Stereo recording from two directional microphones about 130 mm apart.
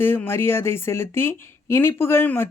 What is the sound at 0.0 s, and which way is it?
Speech, 15° left (ahead or behind).